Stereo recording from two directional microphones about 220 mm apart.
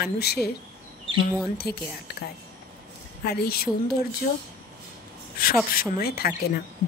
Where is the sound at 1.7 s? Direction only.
45° left (ahead or behind).